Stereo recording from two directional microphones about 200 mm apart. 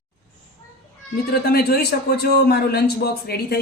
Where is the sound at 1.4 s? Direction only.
50° left (ahead or behind).